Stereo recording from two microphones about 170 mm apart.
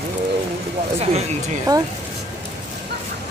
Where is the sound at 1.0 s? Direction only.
40° right (ahead or behind).